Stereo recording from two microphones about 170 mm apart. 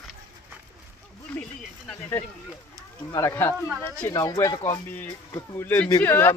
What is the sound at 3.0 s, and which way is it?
Speech, 20° left (ahead or behind).